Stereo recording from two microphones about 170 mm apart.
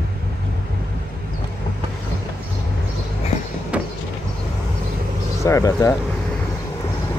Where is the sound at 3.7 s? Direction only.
10° right (ahead or behind).